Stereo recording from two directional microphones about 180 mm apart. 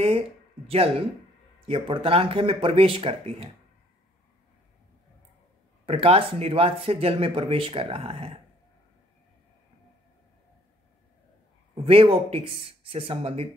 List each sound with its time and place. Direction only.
0.7 s speech: 30° right (ahead or behind)
5.9 s speech: 30° right (ahead or behind)
11.7 s speech: 30° right (ahead or behind)